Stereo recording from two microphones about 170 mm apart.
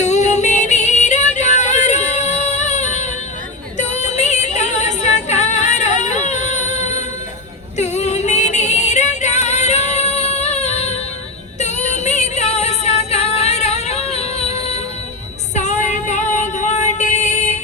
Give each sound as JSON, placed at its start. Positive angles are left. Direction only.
{"t": 0.0, "sound": "music", "side_deg": 45}